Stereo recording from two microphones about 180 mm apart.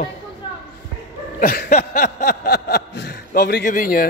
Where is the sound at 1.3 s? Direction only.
55° left (ahead or behind).